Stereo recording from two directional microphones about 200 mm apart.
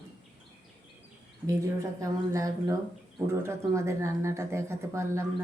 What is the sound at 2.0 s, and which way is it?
Speech, 15° right (ahead or behind).